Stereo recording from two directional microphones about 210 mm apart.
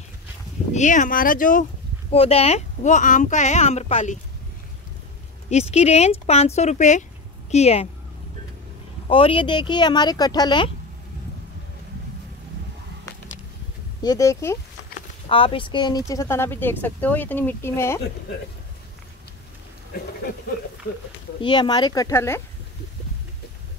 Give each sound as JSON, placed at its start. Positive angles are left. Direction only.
{"t": 0.7, "sound": "speech", "side_deg": 35}
{"t": 5.5, "sound": "speech", "side_deg": 30}
{"t": 9.1, "sound": "speech", "side_deg": 25}
{"t": 14.0, "sound": "speech", "side_deg": 15}
{"t": 15.2, "sound": "speech", "side_deg": 25}
{"t": 21.4, "sound": "speech", "side_deg": 20}